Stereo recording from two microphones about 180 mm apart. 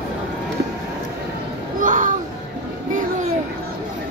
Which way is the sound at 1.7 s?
45° right (ahead or behind).